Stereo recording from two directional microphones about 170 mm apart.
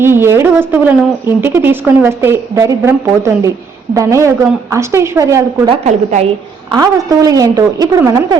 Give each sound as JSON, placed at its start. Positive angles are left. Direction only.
{"t": 0.0, "sound": "speech", "side_deg": -15}
{"t": 5.6, "sound": "a woman's voice", "side_deg": -40}
{"t": 6.7, "sound": "a woman's voice", "side_deg": -25}